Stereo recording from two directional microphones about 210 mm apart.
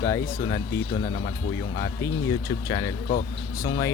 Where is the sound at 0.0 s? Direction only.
15° left (ahead or behind).